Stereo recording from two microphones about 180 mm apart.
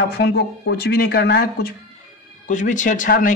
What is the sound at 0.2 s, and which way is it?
A man's voice, 65° left (ahead or behind).